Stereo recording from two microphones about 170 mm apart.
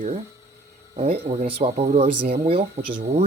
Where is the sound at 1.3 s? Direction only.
40° right (ahead or behind).